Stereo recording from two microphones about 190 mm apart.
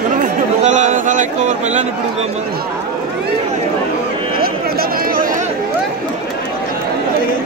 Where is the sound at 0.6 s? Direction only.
40° right (ahead or behind).